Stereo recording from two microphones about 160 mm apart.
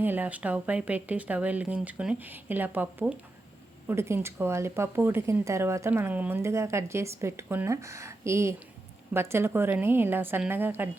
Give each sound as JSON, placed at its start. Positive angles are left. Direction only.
{"t": 0.0, "sound": "speech", "side_deg": -10}